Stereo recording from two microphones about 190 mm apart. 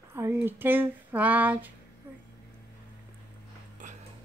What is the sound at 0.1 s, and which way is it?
Speech, 10° right (ahead or behind).